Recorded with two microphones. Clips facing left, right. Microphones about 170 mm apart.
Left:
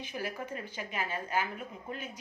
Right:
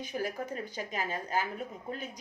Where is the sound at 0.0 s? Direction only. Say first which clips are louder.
Right 3 dB; 40° right (ahead or behind).